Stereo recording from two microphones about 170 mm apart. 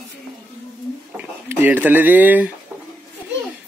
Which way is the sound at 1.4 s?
10° right (ahead or behind).